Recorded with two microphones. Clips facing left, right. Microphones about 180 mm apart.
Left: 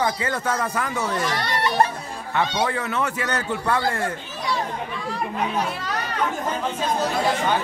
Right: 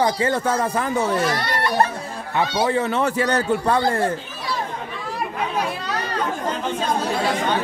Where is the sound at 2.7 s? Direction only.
30° right (ahead or behind).